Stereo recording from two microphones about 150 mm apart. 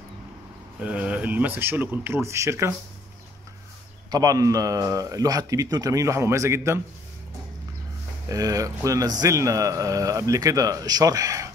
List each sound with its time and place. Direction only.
0.7 s speech: 10° right (ahead or behind)
4.1 s speech: 25° right (ahead or behind)
8.3 s speech: 25° right (ahead or behind)